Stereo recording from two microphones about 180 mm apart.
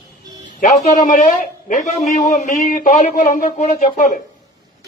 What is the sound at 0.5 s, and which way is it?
A man's voice, 45° left (ahead or behind).